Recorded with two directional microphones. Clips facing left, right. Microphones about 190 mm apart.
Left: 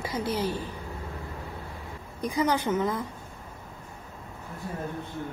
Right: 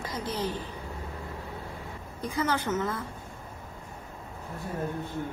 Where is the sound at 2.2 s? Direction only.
15° left (ahead or behind).